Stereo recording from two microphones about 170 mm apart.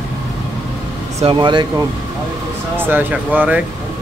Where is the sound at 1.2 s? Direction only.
30° right (ahead or behind).